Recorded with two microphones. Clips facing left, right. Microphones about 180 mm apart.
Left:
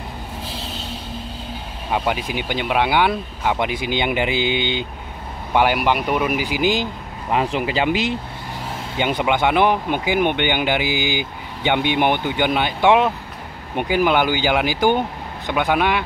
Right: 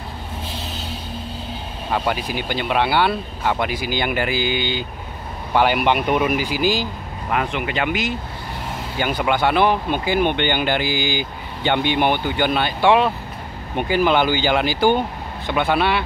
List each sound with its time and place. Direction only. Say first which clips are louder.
1.9 s speech: even; 10° left (ahead or behind)
5.5 s speech: even; 10° left (ahead or behind)
6.4 s speech: left 1 dB; 15° left (ahead or behind)